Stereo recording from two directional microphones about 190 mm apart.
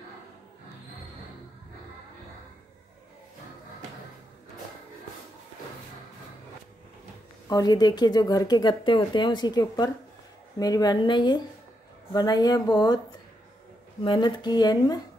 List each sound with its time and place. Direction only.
7.4 s speech: 20° left (ahead or behind)
14.0 s speech: 25° left (ahead or behind)